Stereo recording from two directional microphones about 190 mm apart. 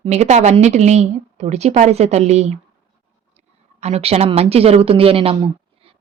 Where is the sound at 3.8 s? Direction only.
35° right (ahead or behind).